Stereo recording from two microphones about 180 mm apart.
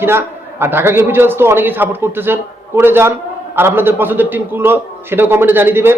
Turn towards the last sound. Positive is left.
turn(degrees=-10)  # may be behind; listen again after turning